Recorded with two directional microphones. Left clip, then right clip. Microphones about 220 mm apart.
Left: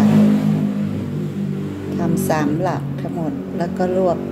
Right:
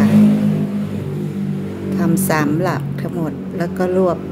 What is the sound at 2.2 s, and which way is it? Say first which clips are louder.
A woman's voice: right 1 dB; 20° right (ahead or behind).